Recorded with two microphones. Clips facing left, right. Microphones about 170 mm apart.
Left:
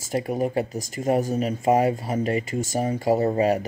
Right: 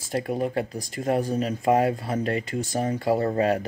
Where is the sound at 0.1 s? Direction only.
5° left (ahead or behind).